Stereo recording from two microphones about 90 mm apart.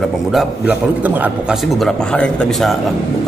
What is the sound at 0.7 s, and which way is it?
Speech, 20° right (ahead or behind).